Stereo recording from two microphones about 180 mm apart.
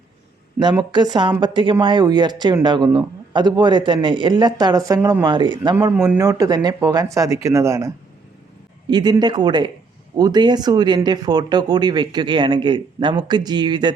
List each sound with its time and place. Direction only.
0.6 s speech: 25° right (ahead or behind)